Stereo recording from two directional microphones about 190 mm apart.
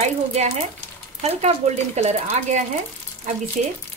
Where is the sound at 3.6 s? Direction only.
40° right (ahead or behind).